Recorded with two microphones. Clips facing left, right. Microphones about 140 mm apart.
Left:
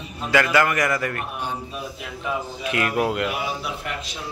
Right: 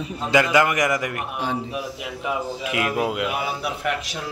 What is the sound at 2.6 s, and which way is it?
Speech, 5° right (ahead or behind).